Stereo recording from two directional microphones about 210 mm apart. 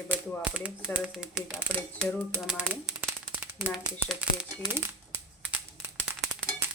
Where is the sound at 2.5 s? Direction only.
5° right (ahead or behind).